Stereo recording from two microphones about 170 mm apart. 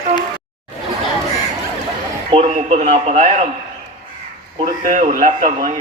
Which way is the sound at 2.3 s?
40° right (ahead or behind).